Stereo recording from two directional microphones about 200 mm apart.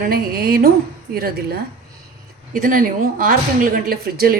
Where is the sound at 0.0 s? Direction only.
45° right (ahead or behind).